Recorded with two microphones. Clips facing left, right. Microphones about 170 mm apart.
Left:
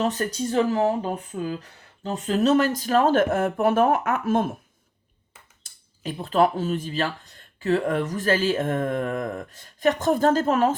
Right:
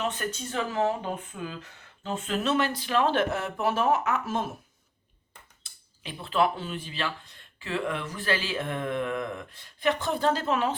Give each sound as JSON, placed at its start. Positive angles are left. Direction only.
{"t": 0.0, "sound": "speech", "side_deg": 35}
{"t": 1.3, "sound": "speech", "side_deg": 25}
{"t": 2.0, "sound": "speech", "side_deg": 40}
{"t": 5.6, "sound": "speech", "side_deg": 45}